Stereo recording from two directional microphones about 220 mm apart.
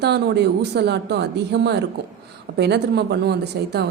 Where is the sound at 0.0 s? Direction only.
50° right (ahead or behind).